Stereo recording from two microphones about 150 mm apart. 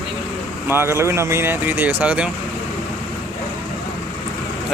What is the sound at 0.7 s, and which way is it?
Speech, 15° right (ahead or behind).